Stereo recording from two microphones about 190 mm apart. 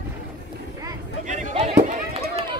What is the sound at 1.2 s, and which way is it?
Run, 40° right (ahead or behind).